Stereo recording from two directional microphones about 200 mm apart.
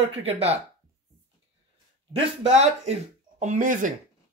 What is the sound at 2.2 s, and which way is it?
Speech, 30° right (ahead or behind).